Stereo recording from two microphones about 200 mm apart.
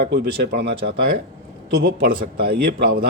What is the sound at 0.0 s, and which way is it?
Speech, 55° right (ahead or behind).